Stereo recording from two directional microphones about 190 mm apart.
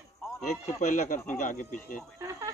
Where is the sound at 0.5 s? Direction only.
40° left (ahead or behind).